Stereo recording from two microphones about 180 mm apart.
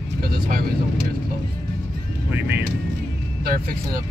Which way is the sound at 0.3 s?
55° right (ahead or behind).